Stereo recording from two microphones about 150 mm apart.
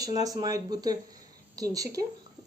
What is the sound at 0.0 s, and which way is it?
A woman's voice, 25° right (ahead or behind).